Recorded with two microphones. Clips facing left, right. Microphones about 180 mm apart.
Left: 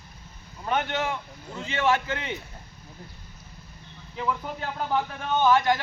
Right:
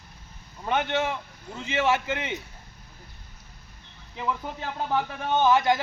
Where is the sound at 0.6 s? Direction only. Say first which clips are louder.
Right 1 dB; 20° right (ahead or behind).